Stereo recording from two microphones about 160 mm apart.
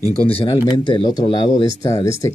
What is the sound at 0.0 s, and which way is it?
Speech, 35° left (ahead or behind).